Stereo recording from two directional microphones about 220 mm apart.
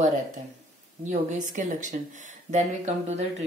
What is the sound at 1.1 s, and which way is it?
Speech, 35° right (ahead or behind).